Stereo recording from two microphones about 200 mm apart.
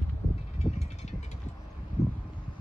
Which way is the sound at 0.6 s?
35° left (ahead or behind).